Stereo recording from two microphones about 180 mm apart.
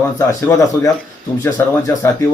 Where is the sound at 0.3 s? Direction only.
15° left (ahead or behind).